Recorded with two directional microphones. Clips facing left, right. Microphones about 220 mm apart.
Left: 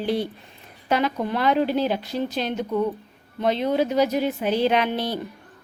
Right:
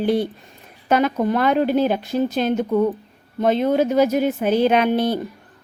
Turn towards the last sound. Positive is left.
turn(degrees=-50)  # may be behind; listen again after turning